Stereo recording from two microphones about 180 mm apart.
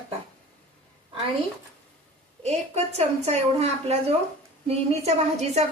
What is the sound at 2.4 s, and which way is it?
A woman's voice, 35° right (ahead or behind).